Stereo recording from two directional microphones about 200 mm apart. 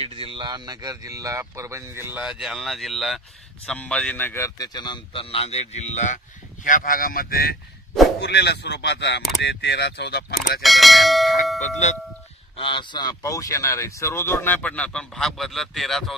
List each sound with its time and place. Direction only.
0.0 s a man's voice: 30° right (ahead or behind); by 10.2 s 55° left (ahead or behind)
10.6 s speech: centre (ahead or behind)
12.5 s speech: 25° left (ahead or behind); by 16.2 s centre (ahead or behind)